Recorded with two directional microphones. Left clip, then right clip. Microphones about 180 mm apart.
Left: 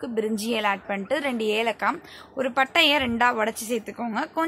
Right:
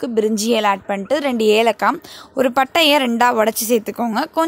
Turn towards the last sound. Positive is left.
turn(degrees=-40)  # may be behind; listen again after turning